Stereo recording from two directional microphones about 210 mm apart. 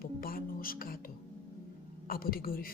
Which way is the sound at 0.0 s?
45° left (ahead or behind).